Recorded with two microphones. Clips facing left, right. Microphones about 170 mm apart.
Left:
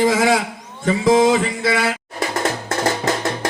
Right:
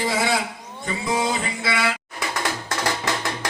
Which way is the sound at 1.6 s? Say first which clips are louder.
Left 5 dB; 45° left (ahead or behind).